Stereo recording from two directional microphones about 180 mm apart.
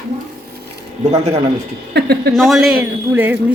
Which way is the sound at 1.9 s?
65° right (ahead or behind).